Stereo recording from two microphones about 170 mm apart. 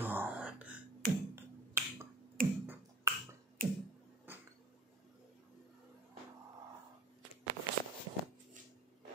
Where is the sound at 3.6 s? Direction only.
55° right (ahead or behind).